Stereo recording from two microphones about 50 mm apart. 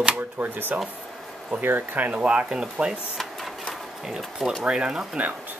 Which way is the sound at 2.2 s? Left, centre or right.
Right.